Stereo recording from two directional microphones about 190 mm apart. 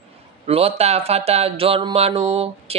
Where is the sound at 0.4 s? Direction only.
30° right (ahead or behind).